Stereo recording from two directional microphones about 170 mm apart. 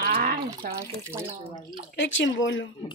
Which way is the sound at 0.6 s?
60° right (ahead or behind).